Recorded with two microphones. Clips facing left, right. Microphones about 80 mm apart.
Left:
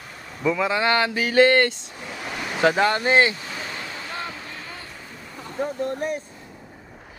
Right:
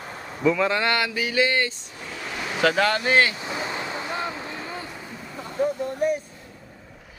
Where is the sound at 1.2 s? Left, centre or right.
Left.